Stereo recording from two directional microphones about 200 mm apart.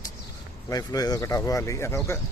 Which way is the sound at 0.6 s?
20° left (ahead or behind).